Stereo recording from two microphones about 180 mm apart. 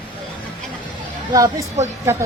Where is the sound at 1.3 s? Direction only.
20° right (ahead or behind).